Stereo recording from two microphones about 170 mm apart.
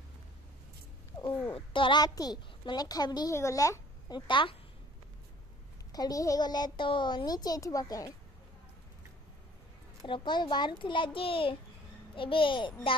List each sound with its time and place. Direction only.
1.5 s a woman's voice: 30° left (ahead or behind)
4.3 s a woman's voice: 30° left (ahead or behind)
5.9 s a woman's voice: 20° left (ahead or behind)
10.0 s a woman's voice: 30° left (ahead or behind)